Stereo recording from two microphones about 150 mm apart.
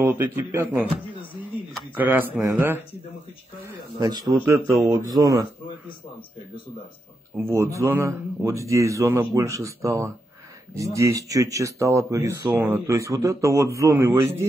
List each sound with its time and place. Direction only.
0.0 s a man's voice: 15° right (ahead or behind)
2.0 s a man's voice: 15° right (ahead or behind)
3.6 s speech: 25° right (ahead or behind)
7.3 s speech: 20° right (ahead or behind)